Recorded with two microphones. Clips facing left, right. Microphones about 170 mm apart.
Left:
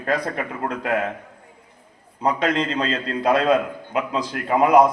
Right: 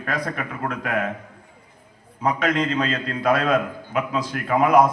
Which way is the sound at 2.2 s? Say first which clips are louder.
Left 1 dB; 30° left (ahead or behind).